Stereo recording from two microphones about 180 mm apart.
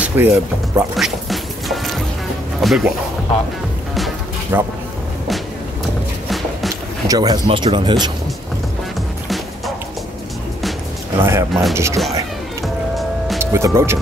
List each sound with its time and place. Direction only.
0.0 s speech: 10° right (ahead or behind)
0.9 s music: centre (ahead or behind)
2.6 s speech: centre (ahead or behind)
4.5 s speech: 10° right (ahead or behind)
7.1 s speech: 20° right (ahead or behind)
11.1 s speech: 15° right (ahead or behind)
12.6 s music: centre (ahead or behind)
13.4 s speech: 15° right (ahead or behind)